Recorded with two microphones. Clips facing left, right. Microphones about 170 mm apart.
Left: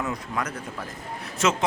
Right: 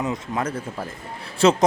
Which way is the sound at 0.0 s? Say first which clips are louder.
Right 4 dB; 25° right (ahead or behind).